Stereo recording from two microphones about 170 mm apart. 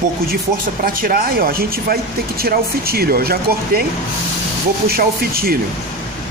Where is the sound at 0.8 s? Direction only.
60° right (ahead or behind).